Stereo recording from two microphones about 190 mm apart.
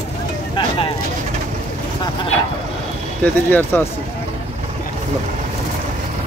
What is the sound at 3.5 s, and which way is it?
Speech, 10° left (ahead or behind).